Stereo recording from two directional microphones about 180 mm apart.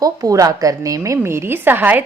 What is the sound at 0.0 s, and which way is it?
A woman's voice, 20° right (ahead or behind).